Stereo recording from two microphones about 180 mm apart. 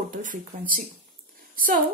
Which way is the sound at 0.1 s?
50° right (ahead or behind).